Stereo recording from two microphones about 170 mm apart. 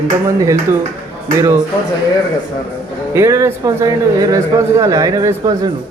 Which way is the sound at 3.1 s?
15° right (ahead or behind).